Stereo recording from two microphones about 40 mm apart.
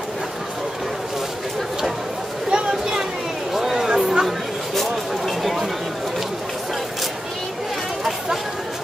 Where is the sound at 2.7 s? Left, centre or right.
Centre.